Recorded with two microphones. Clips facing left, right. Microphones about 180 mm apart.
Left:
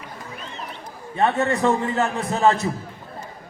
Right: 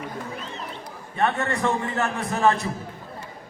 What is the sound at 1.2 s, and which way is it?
A man's voice, 20° left (ahead or behind).